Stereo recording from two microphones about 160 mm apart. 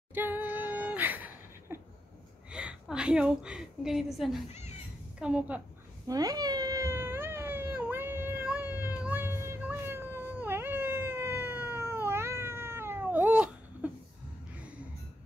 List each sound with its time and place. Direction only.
0.1 s a sound: 10° right (ahead or behind)
2.5 s a woman's voice: 5° right (ahead or behind)
4.5 s cat: 45° left (ahead or behind)
5.2 s a woman's voice: 5° right (ahead or behind)
6.0 s cat: 25° right (ahead or behind)